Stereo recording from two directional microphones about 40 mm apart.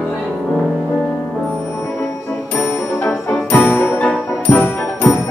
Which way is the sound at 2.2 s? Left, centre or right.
Left.